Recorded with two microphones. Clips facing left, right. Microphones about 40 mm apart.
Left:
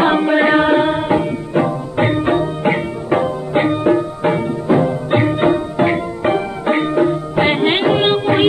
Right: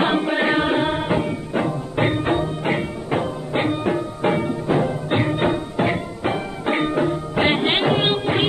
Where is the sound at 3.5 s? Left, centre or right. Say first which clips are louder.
Left 7 dB; left.